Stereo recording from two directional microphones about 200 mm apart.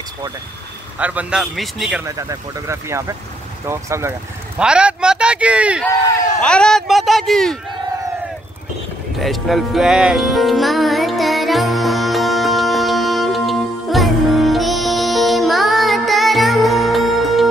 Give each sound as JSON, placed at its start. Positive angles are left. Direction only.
{"t": 0.9, "sound": "speech", "side_deg": -5}
{"t": 2.0, "sound": "speech", "side_deg": -15}
{"t": 4.6, "sound": "a sound", "side_deg": -5}
{"t": 6.4, "sound": "speech", "side_deg": 5}
{"t": 9.2, "sound": "music", "side_deg": 0}